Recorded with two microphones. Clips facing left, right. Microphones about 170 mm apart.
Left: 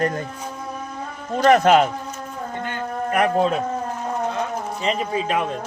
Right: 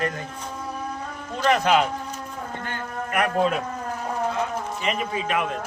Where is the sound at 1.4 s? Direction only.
50° left (ahead or behind).